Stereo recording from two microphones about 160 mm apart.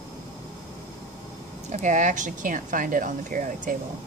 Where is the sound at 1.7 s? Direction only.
50° right (ahead or behind).